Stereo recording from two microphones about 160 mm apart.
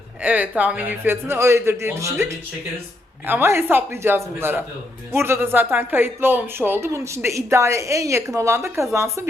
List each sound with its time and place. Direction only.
0.2 s speech: 10° right (ahead or behind)